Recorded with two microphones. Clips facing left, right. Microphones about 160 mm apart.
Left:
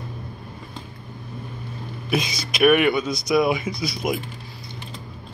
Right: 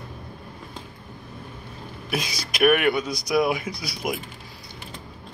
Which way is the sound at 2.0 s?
10° right (ahead or behind).